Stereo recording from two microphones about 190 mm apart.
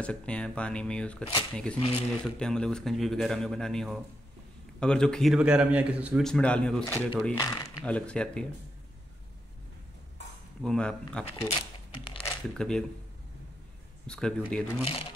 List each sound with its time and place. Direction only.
0.0 s a man's voice: 5° left (ahead or behind)
10.6 s a man's voice: 5° left (ahead or behind)
11.5 s a sound: 25° left (ahead or behind)
12.3 s speech: 5° left (ahead or behind)
14.0 s a man's voice: 5° left (ahead or behind)